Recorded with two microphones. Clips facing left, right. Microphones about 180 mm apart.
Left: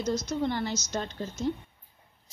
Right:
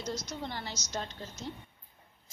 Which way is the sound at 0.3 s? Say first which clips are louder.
Left 10 dB; 50° left (ahead or behind).